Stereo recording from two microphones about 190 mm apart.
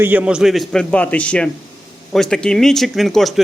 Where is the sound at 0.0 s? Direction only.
10° right (ahead or behind).